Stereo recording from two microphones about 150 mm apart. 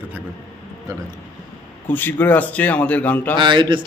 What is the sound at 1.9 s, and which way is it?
A man's voice, 15° left (ahead or behind).